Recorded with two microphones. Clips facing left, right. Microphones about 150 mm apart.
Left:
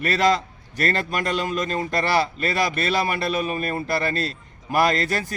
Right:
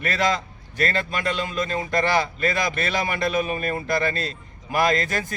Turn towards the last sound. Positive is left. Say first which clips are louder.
# even
turn(degrees=35)  # may be behind; listen again after turning